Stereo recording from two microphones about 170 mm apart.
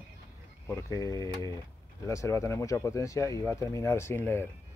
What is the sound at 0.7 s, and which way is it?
Speech, 15° left (ahead or behind).